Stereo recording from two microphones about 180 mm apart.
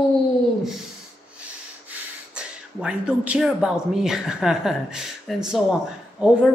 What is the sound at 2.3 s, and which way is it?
A woman's voice, 5° right (ahead or behind).